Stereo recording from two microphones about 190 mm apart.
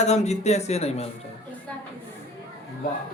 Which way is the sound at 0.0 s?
35° left (ahead or behind).